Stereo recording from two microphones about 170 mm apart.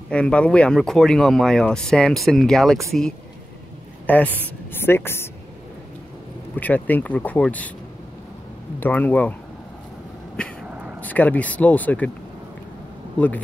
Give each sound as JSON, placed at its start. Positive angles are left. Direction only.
{"t": 0.1, "sound": "speech", "side_deg": 5}
{"t": 4.1, "sound": "speech", "side_deg": 10}
{"t": 6.5, "sound": "speech", "side_deg": 10}
{"t": 8.7, "sound": "speech", "side_deg": 10}
{"t": 10.7, "sound": "a sound", "side_deg": -5}
{"t": 11.0, "sound": "speech", "side_deg": 10}